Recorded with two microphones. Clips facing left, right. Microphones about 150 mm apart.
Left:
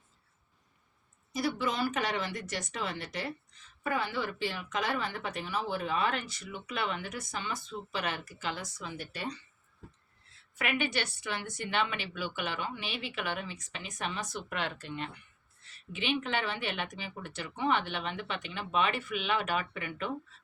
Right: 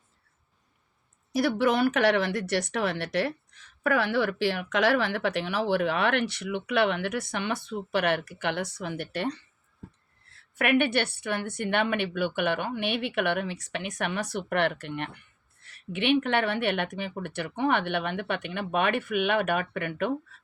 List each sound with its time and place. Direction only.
1.3 s a woman's voice: 70° right (ahead or behind)